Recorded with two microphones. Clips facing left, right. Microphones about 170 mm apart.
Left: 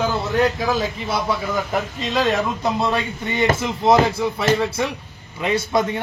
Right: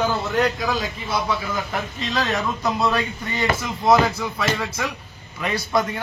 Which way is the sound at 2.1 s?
25° left (ahead or behind).